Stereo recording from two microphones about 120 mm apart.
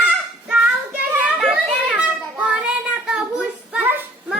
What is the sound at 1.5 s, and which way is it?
Child singing, 10° right (ahead or behind).